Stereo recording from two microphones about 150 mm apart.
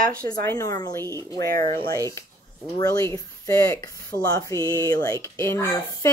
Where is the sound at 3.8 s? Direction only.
25° left (ahead or behind).